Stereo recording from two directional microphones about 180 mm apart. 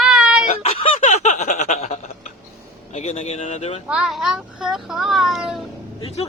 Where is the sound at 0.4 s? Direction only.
40° left (ahead or behind).